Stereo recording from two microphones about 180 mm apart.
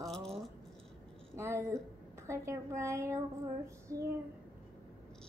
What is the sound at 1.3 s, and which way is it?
A woman's voice, 15° right (ahead or behind).